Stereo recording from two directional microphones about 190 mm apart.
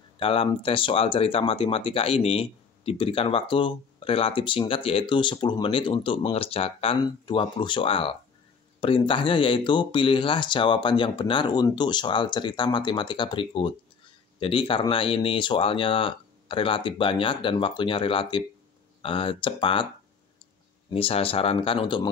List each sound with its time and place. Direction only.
0.2 s speech: 30° left (ahead or behind)
20.9 s speech: 30° left (ahead or behind)